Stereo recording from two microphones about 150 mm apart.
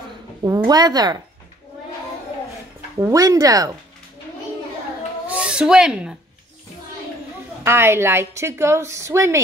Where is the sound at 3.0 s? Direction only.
20° right (ahead or behind).